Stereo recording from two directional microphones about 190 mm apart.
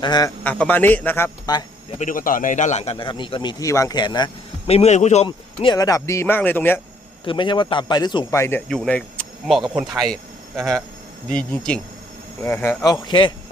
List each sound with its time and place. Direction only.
0.0 s a man's voice: 20° left (ahead or behind)
0.4 s speech: 10° left (ahead or behind)
2.0 s a man's voice: 45° left (ahead or behind)
5.7 s speech: 20° left (ahead or behind)
7.3 s speech: 25° left (ahead or behind); by 10.2 s centre (ahead or behind)
10.6 s speech: 15° right (ahead or behind)
11.3 s a man's voice: 5° left (ahead or behind); by 13.3 s 25° left (ahead or behind)